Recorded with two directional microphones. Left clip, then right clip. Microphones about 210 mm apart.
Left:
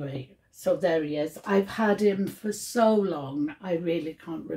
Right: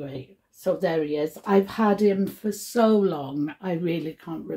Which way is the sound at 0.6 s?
35° right (ahead or behind).